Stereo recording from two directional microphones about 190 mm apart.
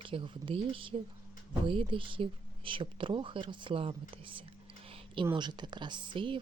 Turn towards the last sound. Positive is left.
turn(degrees=-25)  # may be behind; listen again after turning